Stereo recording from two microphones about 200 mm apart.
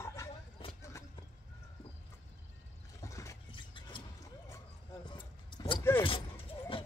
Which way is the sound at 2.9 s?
15° left (ahead or behind).